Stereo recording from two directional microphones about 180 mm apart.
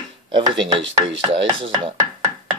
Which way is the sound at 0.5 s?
90° right.